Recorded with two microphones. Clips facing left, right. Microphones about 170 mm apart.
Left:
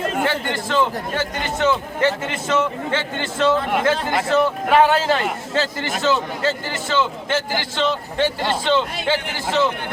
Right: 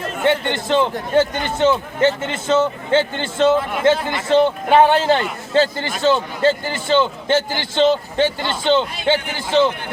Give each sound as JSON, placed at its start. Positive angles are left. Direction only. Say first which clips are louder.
{"t": 0.3, "sound": "a man's voice", "louder": "right 5 dB", "side_deg": -25}